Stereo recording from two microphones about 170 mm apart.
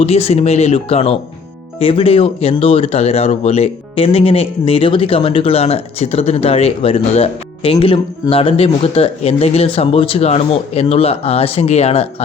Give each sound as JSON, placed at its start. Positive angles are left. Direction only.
{"t": 0.0, "sound": "speech", "side_deg": 35}